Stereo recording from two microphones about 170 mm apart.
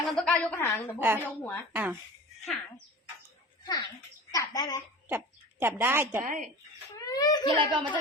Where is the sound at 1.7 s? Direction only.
10° right (ahead or behind).